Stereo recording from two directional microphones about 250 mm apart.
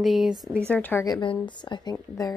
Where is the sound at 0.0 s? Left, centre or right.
Centre.